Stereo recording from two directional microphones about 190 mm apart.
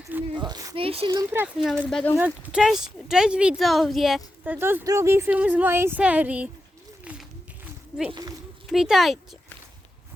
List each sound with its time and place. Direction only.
0.3 s speech: 25° right (ahead or behind)
1.1 s speech: 15° right (ahead or behind)
1.5 s speech: centre (ahead or behind)
7.0 s a sound: 5° right (ahead or behind)
8.6 s speech: centre (ahead or behind)